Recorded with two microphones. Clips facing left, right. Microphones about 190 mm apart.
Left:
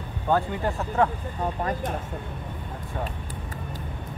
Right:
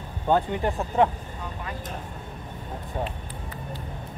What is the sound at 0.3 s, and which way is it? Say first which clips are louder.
Speech: right 1 dB; 20° right (ahead or behind).